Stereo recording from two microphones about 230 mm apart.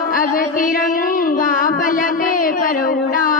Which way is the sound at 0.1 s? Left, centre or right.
Left.